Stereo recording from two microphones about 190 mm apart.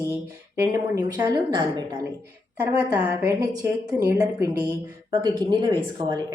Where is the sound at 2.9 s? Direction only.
20° right (ahead or behind).